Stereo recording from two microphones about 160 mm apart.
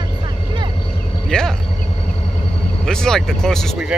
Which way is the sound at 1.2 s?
5° left (ahead or behind).